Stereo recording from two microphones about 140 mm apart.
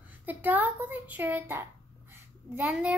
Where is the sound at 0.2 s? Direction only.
15° right (ahead or behind).